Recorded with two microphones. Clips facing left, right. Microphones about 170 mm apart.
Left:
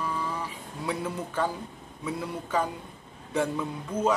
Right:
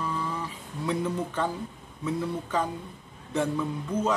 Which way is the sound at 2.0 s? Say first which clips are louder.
Right 3 dB; 10° left (ahead or behind).